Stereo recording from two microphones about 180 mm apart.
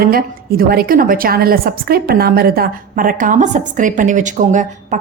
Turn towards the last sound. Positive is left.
turn(degrees=-45)  # may be behind; listen again after turning